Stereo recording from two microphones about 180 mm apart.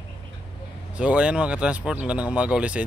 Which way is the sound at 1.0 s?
5° right (ahead or behind).